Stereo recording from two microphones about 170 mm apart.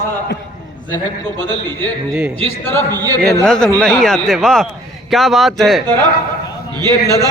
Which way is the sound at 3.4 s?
5° left (ahead or behind).